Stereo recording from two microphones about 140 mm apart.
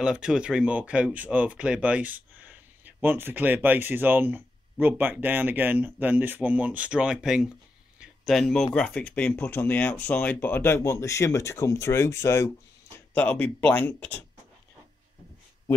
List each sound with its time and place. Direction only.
0.0 s speech: 5° right (ahead or behind)
8.0 s a sound: centre (ahead or behind)
8.7 s speech: 10° left (ahead or behind)